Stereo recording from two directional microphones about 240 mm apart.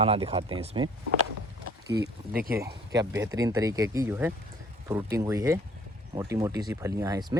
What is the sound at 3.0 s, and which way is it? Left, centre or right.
Speech, centre.